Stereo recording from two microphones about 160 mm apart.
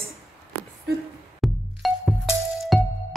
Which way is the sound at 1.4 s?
Centre (ahead or behind).